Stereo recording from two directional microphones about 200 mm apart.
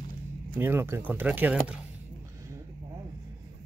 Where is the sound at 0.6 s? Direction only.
10° right (ahead or behind).